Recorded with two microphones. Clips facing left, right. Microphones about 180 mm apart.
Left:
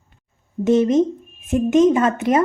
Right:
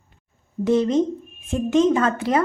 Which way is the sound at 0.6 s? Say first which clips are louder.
Left 3 dB; 20° left (ahead or behind).